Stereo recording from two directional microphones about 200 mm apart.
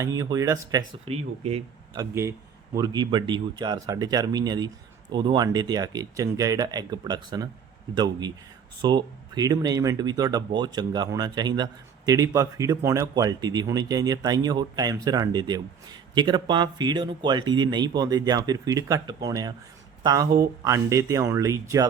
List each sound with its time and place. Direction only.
0.0 s speech: 15° right (ahead or behind)
1.0 s speech: 30° right (ahead or behind)
2.0 s speech: 15° right (ahead or behind)